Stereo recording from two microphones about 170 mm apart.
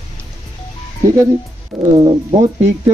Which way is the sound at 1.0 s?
20° right (ahead or behind).